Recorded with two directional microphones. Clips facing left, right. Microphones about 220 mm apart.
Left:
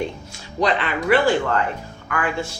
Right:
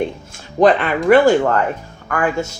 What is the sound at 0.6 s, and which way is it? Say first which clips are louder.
Speech: right 8 dB; 45° right (ahead or behind).